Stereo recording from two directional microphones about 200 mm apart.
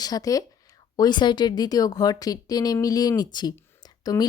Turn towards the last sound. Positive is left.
turn(degrees=20)  # may be behind; listen again after turning